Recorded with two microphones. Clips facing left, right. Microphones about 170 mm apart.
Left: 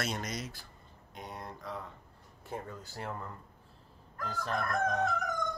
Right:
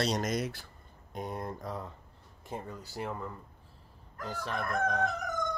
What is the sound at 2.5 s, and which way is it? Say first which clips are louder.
Speech: right 1 dB; 15° right (ahead or behind).